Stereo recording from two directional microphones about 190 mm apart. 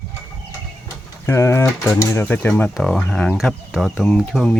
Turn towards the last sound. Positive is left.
turn(degrees=5)  # may be behind; listen again after turning